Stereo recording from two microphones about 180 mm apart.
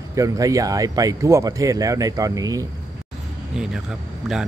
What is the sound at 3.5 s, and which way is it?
Speech, centre (ahead or behind).